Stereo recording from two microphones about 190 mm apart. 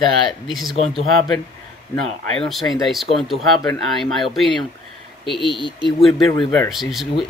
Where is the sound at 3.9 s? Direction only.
Centre (ahead or behind).